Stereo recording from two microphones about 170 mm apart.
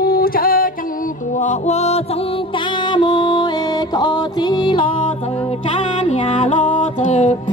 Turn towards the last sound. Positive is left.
turn(degrees=45)  # may be behind; listen again after turning